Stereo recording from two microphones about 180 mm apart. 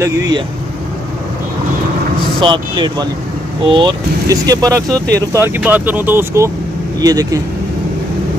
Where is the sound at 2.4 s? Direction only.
25° right (ahead or behind).